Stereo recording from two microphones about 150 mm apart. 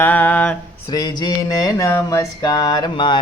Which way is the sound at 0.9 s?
25° left (ahead or behind).